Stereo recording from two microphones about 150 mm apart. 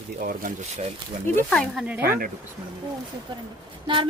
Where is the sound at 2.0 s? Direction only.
70° right (ahead or behind).